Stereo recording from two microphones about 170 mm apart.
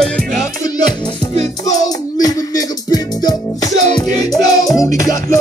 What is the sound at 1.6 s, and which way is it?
Music, 20° left (ahead or behind).